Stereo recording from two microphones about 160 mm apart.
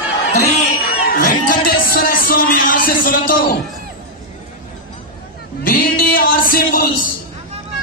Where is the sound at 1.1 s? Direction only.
60° left (ahead or behind).